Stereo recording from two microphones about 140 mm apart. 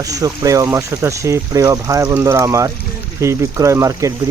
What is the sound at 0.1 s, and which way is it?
Speech, 25° right (ahead or behind).